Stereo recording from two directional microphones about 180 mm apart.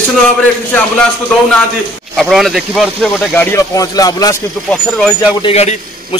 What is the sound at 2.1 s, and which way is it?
Speech, centre (ahead or behind).